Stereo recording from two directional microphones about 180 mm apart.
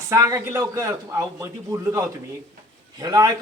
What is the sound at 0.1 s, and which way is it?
A man's voice, 15° right (ahead or behind).